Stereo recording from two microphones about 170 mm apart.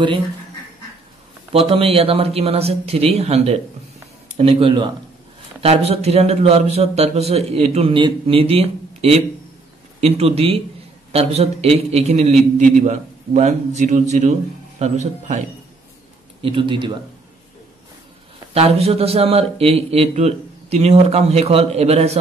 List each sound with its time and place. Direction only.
1.5 s a man's voice: 35° right (ahead or behind)
16.3 s speech: 30° right (ahead or behind)
18.5 s speech: 35° right (ahead or behind)